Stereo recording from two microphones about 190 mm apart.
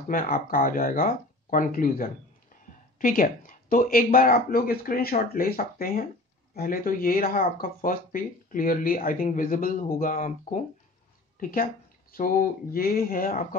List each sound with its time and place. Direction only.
0.1 s speech: 45° left (ahead or behind)